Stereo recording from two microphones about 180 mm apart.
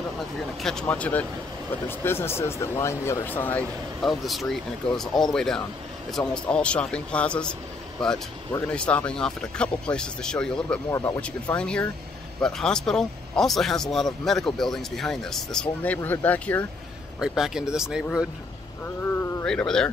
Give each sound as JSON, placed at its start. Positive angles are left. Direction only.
{"t": 0.6, "sound": "speech", "side_deg": 5}
{"t": 10.9, "sound": "speech", "side_deg": 20}
{"t": 11.1, "sound": "speech", "side_deg": 5}
{"t": 17.2, "sound": "speech", "side_deg": -5}
{"t": 19.4, "sound": "speech", "side_deg": 5}